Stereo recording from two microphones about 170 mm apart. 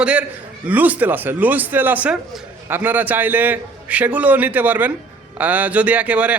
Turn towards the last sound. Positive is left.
turn(degrees=-10)  # may be behind; listen again after turning